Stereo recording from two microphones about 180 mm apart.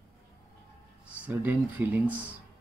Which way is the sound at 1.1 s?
10° right (ahead or behind).